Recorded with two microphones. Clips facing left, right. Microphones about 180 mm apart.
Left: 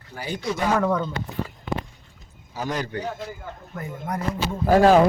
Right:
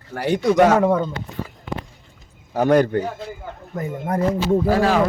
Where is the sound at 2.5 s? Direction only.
60° right (ahead or behind).